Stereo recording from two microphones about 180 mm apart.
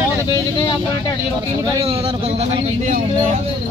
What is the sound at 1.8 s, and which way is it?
Speech, 35° right (ahead or behind).